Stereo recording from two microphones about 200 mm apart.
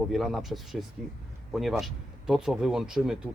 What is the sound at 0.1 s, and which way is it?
Speech, centre (ahead or behind).